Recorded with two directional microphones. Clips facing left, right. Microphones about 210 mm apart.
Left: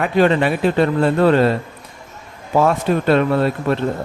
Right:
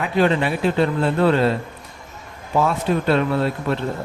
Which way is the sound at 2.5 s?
50° left (ahead or behind).